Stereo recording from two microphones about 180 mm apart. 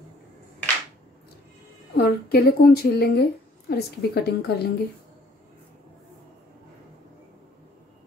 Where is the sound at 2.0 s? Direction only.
60° left (ahead or behind).